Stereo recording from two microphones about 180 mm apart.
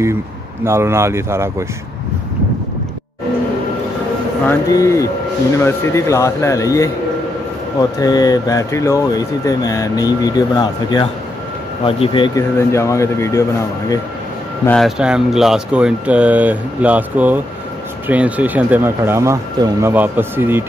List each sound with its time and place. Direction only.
0.7 s speech: 15° right (ahead or behind)
4.5 s speech: 20° left (ahead or behind)
8.0 s speech: 20° left (ahead or behind)
12.5 s speech: 15° left (ahead or behind)
14.7 s speech: centre (ahead or behind)